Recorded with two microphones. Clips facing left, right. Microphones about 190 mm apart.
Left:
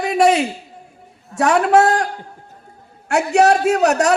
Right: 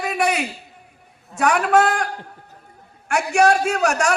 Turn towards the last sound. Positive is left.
turn(degrees=20)  # may be behind; listen again after turning